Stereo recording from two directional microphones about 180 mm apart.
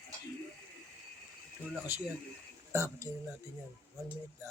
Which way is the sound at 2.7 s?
15° right (ahead or behind).